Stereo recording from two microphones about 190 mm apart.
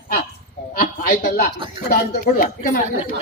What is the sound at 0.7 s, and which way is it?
A woman's voice, 50° left (ahead or behind).